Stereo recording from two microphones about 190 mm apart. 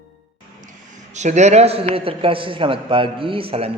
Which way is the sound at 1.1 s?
35° right (ahead or behind).